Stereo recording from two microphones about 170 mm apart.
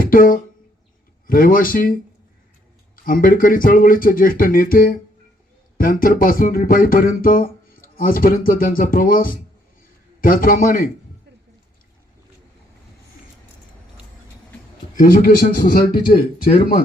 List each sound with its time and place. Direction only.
0.0 s a sound: 55° left (ahead or behind)
1.3 s speech: 55° left (ahead or behind)
14.9 s speech: 55° left (ahead or behind)